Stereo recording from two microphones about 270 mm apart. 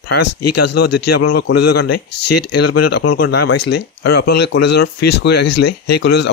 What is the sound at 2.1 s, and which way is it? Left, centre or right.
Speech, left.